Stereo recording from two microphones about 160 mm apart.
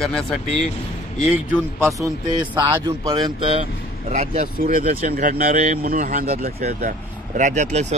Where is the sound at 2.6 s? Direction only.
25° right (ahead or behind).